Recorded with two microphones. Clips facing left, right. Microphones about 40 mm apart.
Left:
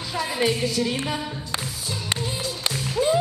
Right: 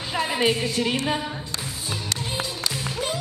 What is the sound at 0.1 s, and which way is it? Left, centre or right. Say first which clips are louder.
Speech: right 1 dB; right.